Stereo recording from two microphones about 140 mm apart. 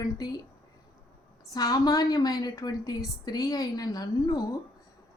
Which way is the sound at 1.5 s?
30° left (ahead or behind).